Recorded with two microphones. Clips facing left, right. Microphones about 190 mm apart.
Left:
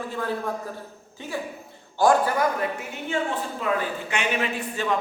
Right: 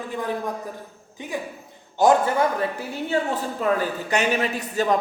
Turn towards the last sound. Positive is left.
turn(degrees=-40)  # may be behind; listen again after turning